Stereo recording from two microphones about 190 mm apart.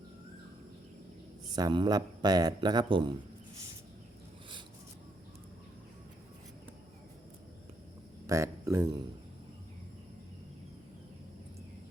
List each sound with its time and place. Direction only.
1.5 s speech: 20° right (ahead or behind)
8.3 s speech: 15° right (ahead or behind)